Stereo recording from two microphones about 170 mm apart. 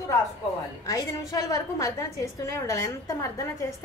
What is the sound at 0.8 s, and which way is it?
A woman's voice, 20° left (ahead or behind).